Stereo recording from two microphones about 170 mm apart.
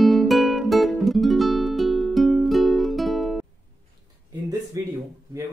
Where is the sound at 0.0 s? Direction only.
Centre (ahead or behind).